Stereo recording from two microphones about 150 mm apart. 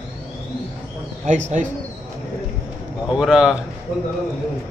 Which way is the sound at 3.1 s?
5° right (ahead or behind).